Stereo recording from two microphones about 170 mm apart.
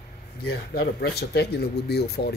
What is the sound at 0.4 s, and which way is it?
Speech, 70° left (ahead or behind).